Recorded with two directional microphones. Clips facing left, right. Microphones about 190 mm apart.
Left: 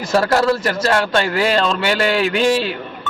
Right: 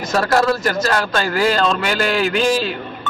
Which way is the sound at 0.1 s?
30° left (ahead or behind).